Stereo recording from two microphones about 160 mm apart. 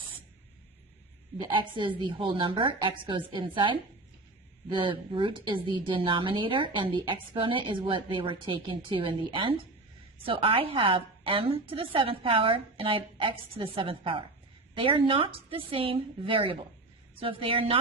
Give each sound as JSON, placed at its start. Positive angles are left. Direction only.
{"t": 1.4, "sound": "a woman's voice", "side_deg": -30}